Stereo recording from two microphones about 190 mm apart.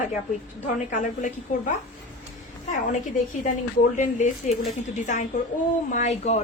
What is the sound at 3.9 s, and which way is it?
A woman's voice, 40° left (ahead or behind).